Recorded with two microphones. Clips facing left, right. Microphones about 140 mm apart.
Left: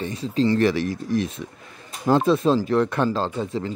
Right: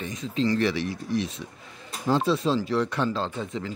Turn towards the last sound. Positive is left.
turn(degrees=35)  # may be behind; listen again after turning